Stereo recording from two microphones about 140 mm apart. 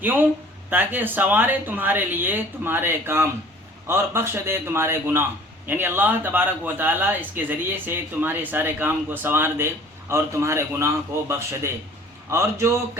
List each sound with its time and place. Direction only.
0.0 s a man's voice: 15° right (ahead or behind)